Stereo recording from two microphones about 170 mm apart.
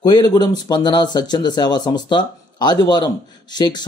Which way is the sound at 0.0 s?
25° left (ahead or behind).